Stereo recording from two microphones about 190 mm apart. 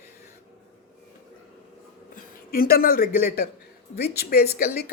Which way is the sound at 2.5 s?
50° left (ahead or behind).